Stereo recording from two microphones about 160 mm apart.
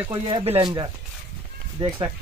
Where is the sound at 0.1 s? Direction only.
30° right (ahead or behind).